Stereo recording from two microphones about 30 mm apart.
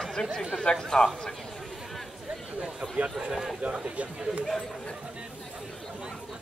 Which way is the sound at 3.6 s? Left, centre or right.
Right.